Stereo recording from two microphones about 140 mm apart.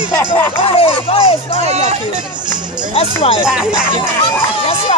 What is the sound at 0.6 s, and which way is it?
Speech, 45° left (ahead or behind).